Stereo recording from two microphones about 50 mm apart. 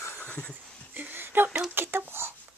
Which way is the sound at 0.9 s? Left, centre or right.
Right.